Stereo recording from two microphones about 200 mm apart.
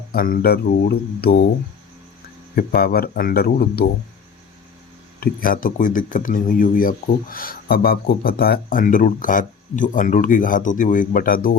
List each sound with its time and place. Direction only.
0.1 s speech: 50° left (ahead or behind)
2.6 s speech: 50° left (ahead or behind)
5.2 s speech: 45° left (ahead or behind)